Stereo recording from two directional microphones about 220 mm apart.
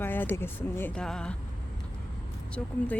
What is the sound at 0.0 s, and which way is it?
Speech, 10° left (ahead or behind).